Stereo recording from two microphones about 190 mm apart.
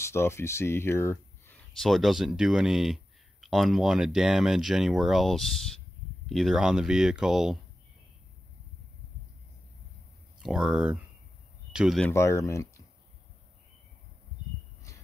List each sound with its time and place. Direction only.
0.0 s speech: 15° left (ahead or behind)
1.8 s speech: centre (ahead or behind)
10.4 s speech: centre (ahead or behind)
12.1 s speech: 15° left (ahead or behind)